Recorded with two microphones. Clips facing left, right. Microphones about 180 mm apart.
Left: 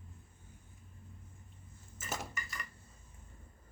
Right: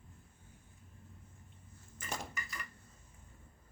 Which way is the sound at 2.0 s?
Centre (ahead or behind).